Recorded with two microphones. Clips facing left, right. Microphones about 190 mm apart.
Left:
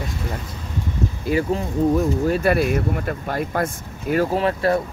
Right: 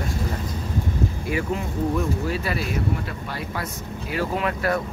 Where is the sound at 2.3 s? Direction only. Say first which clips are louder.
Left 8 dB; 55° left (ahead or behind).